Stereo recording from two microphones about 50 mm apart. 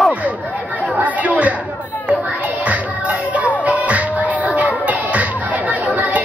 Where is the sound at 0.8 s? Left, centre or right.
Right.